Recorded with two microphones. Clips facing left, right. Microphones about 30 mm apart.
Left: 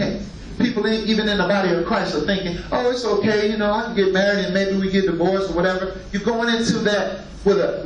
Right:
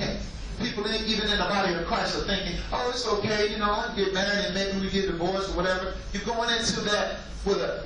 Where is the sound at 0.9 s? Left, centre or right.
Centre.